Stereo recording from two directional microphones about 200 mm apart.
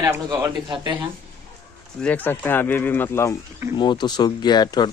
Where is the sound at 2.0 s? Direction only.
10° left (ahead or behind).